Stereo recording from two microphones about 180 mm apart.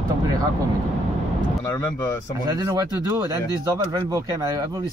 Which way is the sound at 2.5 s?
20° right (ahead or behind).